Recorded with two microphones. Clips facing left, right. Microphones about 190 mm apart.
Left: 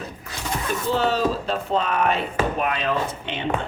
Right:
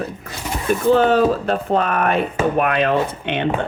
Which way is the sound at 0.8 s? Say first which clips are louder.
Right 8 dB; 55° right (ahead or behind).